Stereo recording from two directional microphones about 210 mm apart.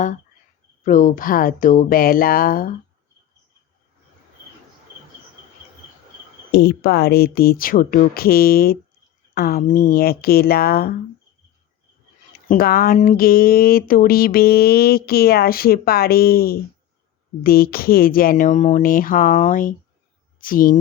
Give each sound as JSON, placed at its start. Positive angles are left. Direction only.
{"t": 0.9, "sound": "speech", "side_deg": 40}
{"t": 6.5, "sound": "speech", "side_deg": 50}
{"t": 12.5, "sound": "speech", "side_deg": 45}